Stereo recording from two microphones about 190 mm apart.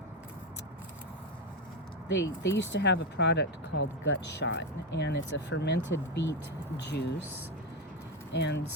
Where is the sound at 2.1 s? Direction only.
70° left (ahead or behind).